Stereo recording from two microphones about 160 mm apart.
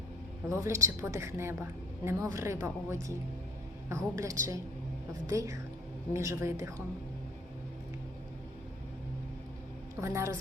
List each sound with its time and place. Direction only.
0.4 s a woman's voice: 20° right (ahead or behind)
10.0 s a woman's voice: 15° right (ahead or behind)